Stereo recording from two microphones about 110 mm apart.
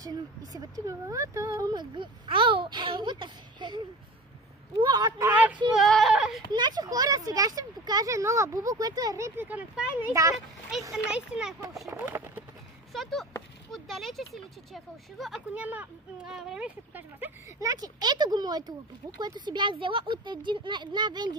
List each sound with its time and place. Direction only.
0.0 s speech: 35° right (ahead or behind)
5.3 s speech: 15° right (ahead or behind)
5.8 s speech: centre (ahead or behind)
6.5 s speech: 40° right (ahead or behind)
9.5 s speech: 15° right (ahead or behind)
10.2 s speech: 30° right (ahead or behind)
10.7 s speech: 5° right (ahead or behind)
11.9 s speech: 20° right (ahead or behind)
12.9 s speech: centre (ahead or behind)
15.5 s speech: 15° right (ahead or behind)
17.6 s speech: 35° right (ahead or behind)